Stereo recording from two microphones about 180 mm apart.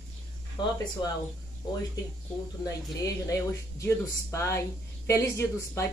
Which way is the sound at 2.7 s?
20° left (ahead or behind).